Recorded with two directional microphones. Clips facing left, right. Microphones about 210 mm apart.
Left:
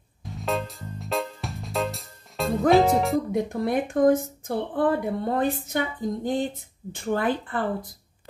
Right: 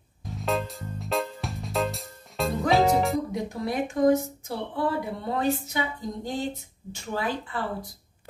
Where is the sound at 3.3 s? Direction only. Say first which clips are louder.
Left 5 dB; 55° left (ahead or behind).